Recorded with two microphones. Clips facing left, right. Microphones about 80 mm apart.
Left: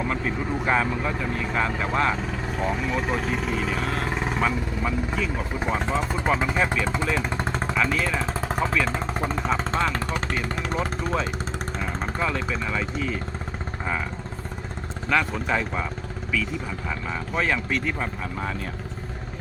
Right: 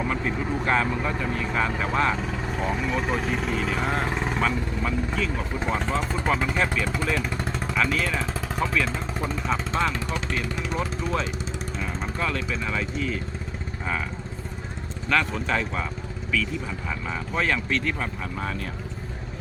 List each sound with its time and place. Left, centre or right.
0.0 s speech: centre
7.8 s speech: centre
8.9 s speech: left
9.5 s speech: centre
9.9 s speech: left
10.8 s speech: centre
15.1 s speech: centre
17.3 s speech: centre